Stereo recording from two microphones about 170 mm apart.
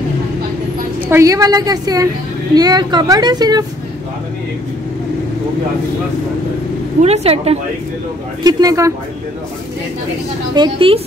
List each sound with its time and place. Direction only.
1.0 s a woman's voice: 15° right (ahead or behind)
7.0 s speech: 40° right (ahead or behind)
8.5 s a woman's voice: 20° right (ahead or behind)
10.5 s a woman's voice: 30° right (ahead or behind)